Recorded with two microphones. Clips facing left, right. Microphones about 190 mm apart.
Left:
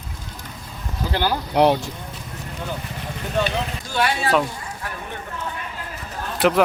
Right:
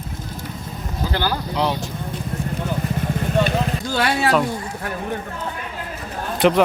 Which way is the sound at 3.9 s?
75° right (ahead or behind).